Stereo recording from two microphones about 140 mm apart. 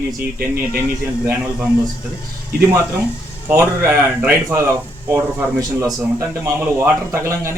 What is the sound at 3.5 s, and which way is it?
Speech, 15° right (ahead or behind).